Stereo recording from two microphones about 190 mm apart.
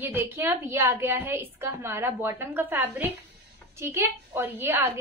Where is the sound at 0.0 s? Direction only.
10° right (ahead or behind).